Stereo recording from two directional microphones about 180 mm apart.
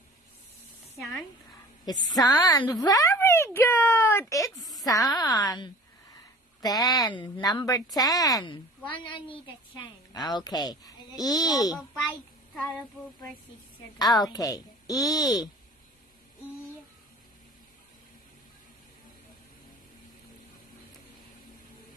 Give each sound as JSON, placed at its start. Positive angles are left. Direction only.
{"t": 0.9, "sound": "speech", "side_deg": 0}
{"t": 2.1, "sound": "a woman's voice", "side_deg": 20}
{"t": 4.6, "sound": "a sound", "side_deg": 0}
{"t": 4.8, "sound": "a woman's voice", "side_deg": 20}
{"t": 13.9, "sound": "a woman's voice", "side_deg": 20}